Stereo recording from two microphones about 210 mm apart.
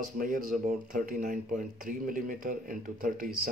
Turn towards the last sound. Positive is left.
turn(degrees=-45)  # may be behind; listen again after turning